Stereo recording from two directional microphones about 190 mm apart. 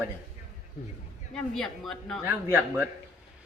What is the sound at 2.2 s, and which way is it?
Speech, 10° right (ahead or behind).